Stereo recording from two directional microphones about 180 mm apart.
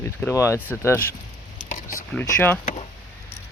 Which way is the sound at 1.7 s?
45° left (ahead or behind).